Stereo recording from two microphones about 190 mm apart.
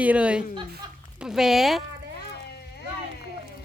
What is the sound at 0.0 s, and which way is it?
Speech, 5° right (ahead or behind).